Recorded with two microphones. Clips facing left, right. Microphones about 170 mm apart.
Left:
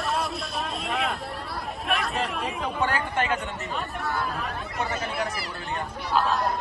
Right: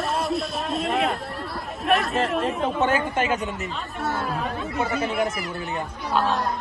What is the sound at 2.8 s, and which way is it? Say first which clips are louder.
Chatter: right 3 dB; 20° right (ahead or behind).